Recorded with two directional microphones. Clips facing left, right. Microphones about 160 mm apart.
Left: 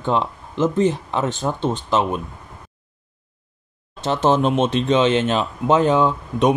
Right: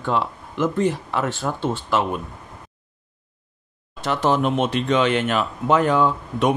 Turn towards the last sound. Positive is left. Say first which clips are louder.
# left 2 dB
turn(degrees=20)  # may be behind; listen again after turning